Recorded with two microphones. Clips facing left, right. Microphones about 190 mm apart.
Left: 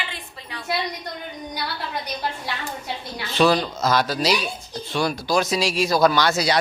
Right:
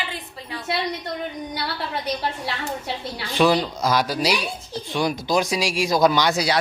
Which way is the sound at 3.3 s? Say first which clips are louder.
Even; 15° right (ahead or behind).